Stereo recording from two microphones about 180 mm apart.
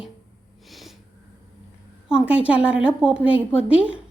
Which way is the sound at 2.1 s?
5° right (ahead or behind).